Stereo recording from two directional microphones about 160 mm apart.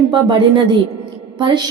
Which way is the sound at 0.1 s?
30° right (ahead or behind).